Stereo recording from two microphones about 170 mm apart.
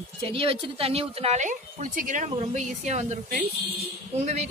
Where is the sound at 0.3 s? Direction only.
30° right (ahead or behind).